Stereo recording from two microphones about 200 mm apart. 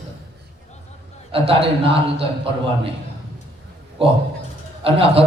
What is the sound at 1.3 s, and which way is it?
Speech, 30° right (ahead or behind).